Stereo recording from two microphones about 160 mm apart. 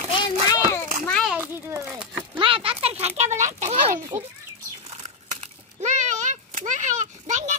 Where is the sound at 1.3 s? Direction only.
10° right (ahead or behind).